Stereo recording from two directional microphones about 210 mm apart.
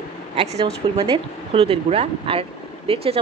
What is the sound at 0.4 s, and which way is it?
A woman's voice, 30° right (ahead or behind).